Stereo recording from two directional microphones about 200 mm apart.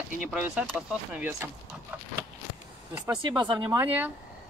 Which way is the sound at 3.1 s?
25° right (ahead or behind).